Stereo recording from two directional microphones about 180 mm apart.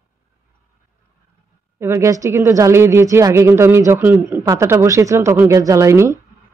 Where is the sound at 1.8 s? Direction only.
15° right (ahead or behind).